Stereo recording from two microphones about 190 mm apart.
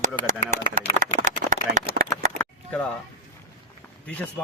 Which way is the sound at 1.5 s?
45° right (ahead or behind).